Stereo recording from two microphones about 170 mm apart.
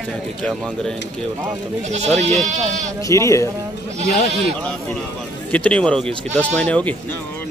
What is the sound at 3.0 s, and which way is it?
Speech, 20° left (ahead or behind).